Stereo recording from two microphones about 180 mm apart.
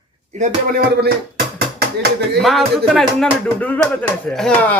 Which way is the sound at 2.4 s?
Centre (ahead or behind).